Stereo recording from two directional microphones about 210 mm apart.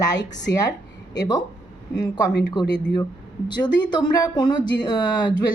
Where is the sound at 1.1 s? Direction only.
20° left (ahead or behind).